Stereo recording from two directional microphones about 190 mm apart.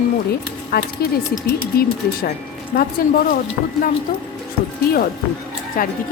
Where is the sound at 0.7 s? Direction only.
55° left (ahead or behind).